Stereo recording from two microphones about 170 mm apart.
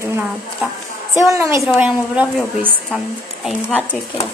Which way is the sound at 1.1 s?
20° right (ahead or behind).